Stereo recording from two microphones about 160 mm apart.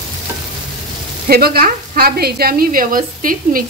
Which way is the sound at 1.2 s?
75° right (ahead or behind).